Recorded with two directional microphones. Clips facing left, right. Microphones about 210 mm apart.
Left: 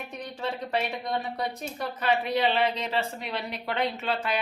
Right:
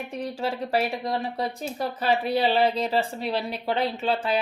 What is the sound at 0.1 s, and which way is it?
Speech, 30° right (ahead or behind).